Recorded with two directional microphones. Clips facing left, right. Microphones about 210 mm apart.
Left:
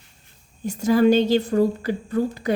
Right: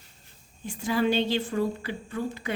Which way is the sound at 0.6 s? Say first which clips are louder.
Left 9 dB; 40° left (ahead or behind).